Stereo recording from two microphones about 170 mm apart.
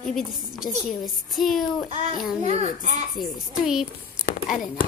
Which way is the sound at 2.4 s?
40° right (ahead or behind).